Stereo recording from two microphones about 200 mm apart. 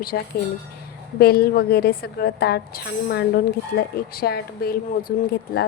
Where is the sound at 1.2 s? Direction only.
50° left (ahead or behind).